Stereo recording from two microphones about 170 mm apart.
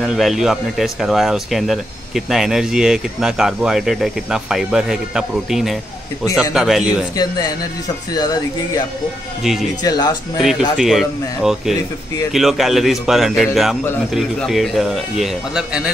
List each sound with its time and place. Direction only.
0.0 s speech: centre (ahead or behind)
7.2 s speech: 25° left (ahead or behind)
9.4 s speech: centre (ahead or behind)
9.8 s speech: 25° left (ahead or behind)
10.8 s speech: centre (ahead or behind)